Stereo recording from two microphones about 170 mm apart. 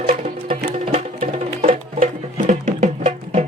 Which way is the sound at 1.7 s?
50° right (ahead or behind).